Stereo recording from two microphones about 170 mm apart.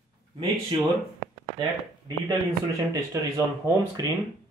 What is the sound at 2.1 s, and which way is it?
Speech, 25° right (ahead or behind).